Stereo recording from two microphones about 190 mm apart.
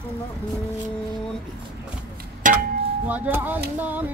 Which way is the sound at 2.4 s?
45° right (ahead or behind).